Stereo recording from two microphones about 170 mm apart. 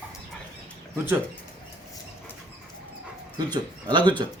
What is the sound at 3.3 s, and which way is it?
Speech, 25° right (ahead or behind).